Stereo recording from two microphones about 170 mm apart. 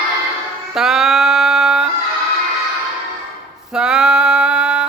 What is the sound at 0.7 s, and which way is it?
Music, centre (ahead or behind).